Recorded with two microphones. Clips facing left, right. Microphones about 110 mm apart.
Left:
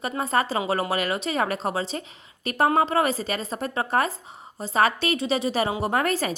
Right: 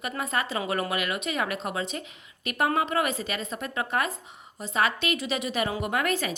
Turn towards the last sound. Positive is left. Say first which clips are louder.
# left 3 dB
turn(degrees=35)  # may be behind; listen again after turning